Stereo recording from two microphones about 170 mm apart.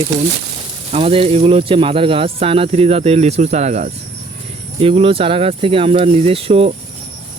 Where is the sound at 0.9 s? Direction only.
35° right (ahead or behind).